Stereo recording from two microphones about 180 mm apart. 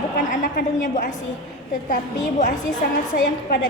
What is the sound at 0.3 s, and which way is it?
Speech, 45° left (ahead or behind).